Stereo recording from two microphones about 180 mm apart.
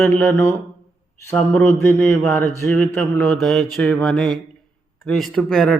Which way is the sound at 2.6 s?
10° left (ahead or behind).